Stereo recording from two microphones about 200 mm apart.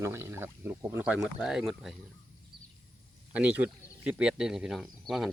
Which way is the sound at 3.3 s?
5° right (ahead or behind).